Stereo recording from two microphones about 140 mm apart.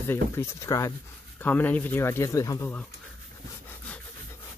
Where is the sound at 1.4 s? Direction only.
10° left (ahead or behind).